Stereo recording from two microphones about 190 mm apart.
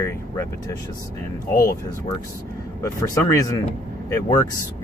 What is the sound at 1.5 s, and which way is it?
Speech, 50° left (ahead or behind).